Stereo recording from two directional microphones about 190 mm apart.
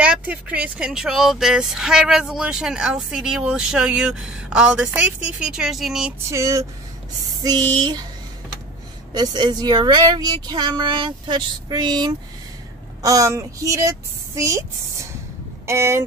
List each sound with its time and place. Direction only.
0.0 s speech: 5° right (ahead or behind)
6.3 s speech: 15° right (ahead or behind)
9.1 s speech: 20° right (ahead or behind)
15.6 s speech: 15° right (ahead or behind)